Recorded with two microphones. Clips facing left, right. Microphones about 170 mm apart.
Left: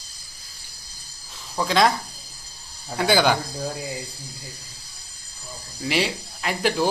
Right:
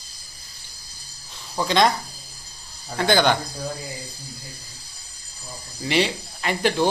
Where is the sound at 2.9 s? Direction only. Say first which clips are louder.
Even; 5° left (ahead or behind).